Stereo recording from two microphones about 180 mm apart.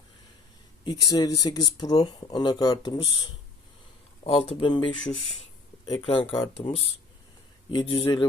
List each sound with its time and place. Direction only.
0.9 s speech: 20° left (ahead or behind)